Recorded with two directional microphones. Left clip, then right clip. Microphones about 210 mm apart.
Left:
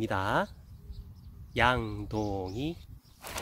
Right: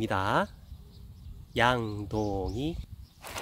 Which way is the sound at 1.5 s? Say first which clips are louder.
Right 1 dB; 15° right (ahead or behind).